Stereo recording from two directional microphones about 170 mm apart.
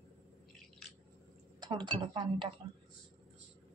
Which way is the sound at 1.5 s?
25° right (ahead or behind).